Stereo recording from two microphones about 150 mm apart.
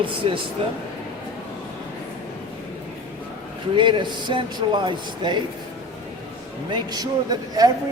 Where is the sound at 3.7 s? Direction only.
35° right (ahead or behind).